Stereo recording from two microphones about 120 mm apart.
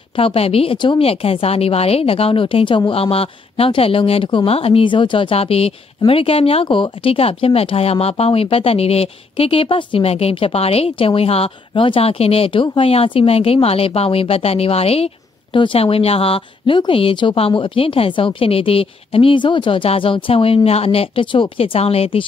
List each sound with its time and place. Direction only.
0.2 s speech: 55° left (ahead or behind)
15.5 s speech: 45° left (ahead or behind)